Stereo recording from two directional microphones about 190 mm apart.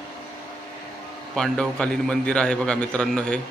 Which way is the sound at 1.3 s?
5° left (ahead or behind).